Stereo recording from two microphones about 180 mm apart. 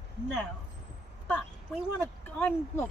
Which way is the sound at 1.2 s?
5° right (ahead or behind).